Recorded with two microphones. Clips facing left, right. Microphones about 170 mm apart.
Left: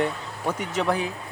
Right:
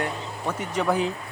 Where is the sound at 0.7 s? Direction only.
5° right (ahead or behind).